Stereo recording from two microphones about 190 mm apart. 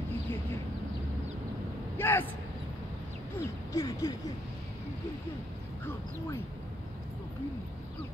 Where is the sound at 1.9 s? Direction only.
10° left (ahead or behind).